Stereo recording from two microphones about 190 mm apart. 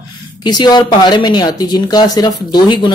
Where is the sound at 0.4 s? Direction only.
20° left (ahead or behind).